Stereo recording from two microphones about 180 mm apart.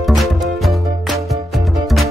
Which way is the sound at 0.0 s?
Centre (ahead or behind).